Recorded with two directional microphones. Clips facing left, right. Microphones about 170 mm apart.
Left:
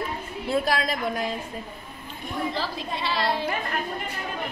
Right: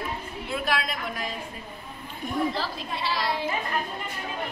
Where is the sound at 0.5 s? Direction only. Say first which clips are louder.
Left 5 dB; 40° left (ahead or behind).